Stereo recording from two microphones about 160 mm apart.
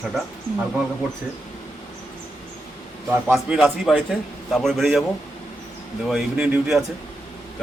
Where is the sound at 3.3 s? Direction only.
Centre (ahead or behind).